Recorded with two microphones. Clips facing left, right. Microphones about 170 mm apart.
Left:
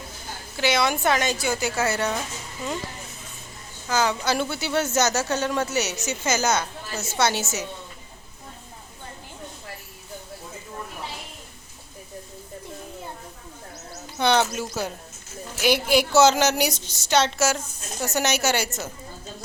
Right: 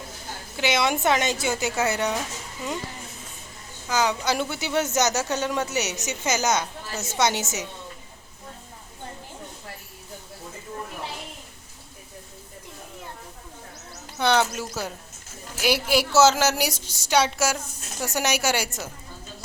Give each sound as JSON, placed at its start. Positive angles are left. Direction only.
{"t": 0.5, "sound": "a woman's voice", "side_deg": -20}
{"t": 3.8, "sound": "speech", "side_deg": -15}
{"t": 14.2, "sound": "speech", "side_deg": -5}